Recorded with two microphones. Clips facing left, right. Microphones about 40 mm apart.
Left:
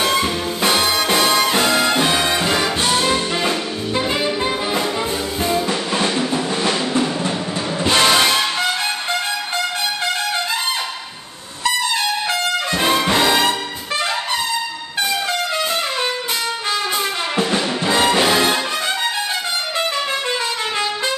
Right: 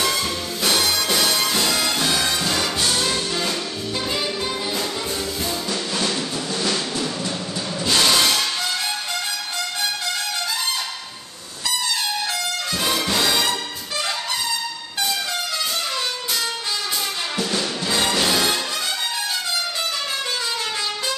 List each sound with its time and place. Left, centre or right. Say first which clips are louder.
0.0 s music: left 5 dB; left
5.4 s drum: left 6 dB; left
7.8 s music: left 4 dB; left
12.3 s trumpet: left 6 dB; left
17.4 s music: left 6 dB; left